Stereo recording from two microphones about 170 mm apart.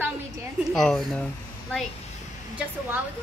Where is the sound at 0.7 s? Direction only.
5° left (ahead or behind).